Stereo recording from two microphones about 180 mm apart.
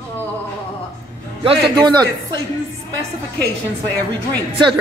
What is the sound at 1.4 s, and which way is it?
Speech, 30° right (ahead or behind).